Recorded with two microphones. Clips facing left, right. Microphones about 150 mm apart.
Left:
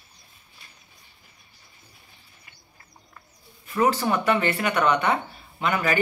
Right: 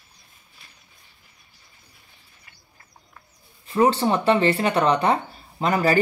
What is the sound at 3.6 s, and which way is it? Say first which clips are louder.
Speech: right 3 dB; 30° right (ahead or behind).